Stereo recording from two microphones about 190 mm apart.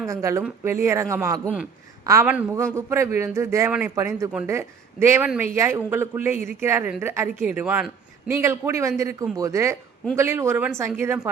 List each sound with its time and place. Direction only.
0.1 s a man's voice: 15° right (ahead or behind)